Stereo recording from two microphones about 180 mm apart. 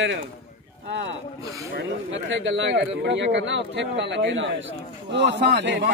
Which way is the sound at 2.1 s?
90° right.